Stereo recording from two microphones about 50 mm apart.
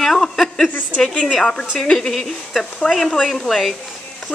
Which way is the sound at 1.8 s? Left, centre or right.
Centre.